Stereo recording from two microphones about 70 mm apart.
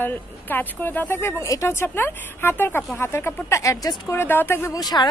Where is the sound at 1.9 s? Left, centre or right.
Left.